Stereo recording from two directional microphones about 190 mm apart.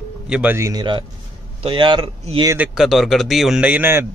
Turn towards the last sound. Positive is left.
turn(degrees=-10)  # may be behind; listen again after turning